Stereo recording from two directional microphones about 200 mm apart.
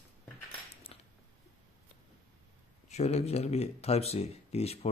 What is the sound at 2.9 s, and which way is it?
Speech, 35° left (ahead or behind).